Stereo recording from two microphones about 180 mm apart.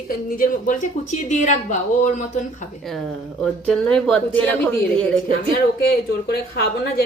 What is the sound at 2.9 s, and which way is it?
A woman's voice, centre (ahead or behind).